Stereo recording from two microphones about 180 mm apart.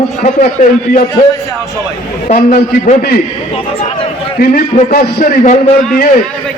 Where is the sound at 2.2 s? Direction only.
45° left (ahead or behind).